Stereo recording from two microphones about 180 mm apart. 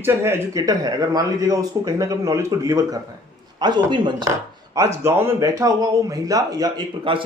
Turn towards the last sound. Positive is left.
turn(degrees=-25)  # may be behind; listen again after turning